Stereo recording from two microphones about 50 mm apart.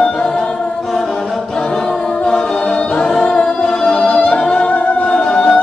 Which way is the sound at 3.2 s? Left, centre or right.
Centre.